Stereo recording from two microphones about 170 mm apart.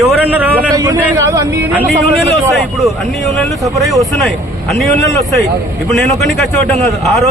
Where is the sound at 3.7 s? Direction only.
Centre (ahead or behind).